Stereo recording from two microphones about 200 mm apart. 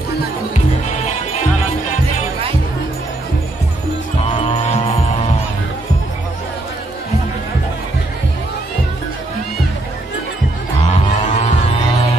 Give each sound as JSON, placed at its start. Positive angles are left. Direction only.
{"t": 0.8, "sound": "music", "side_deg": 35}
{"t": 4.4, "sound": "music", "side_deg": 30}
{"t": 10.9, "sound": "music", "side_deg": 35}